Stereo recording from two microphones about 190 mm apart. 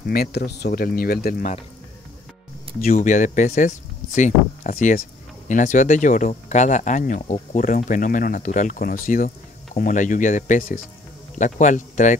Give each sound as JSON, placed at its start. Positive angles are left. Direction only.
{"t": 0.0, "sound": "speech", "side_deg": 55}
{"t": 2.8, "sound": "speech", "side_deg": 45}